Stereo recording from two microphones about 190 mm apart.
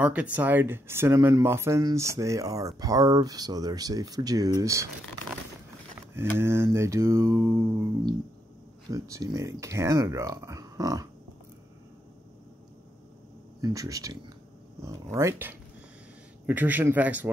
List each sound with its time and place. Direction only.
0.0 s speech: 5° right (ahead or behind)
6.1 s speech: 15° right (ahead or behind)
8.9 s speech: 15° right (ahead or behind)
13.6 s speech: 20° right (ahead or behind)